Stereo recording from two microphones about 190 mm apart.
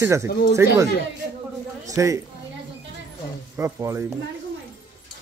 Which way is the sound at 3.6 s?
15° right (ahead or behind).